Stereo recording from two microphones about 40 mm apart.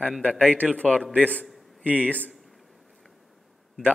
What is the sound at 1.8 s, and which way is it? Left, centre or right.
Speech, right.